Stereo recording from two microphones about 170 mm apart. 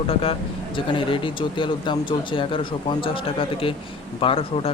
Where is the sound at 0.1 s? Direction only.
35° left (ahead or behind).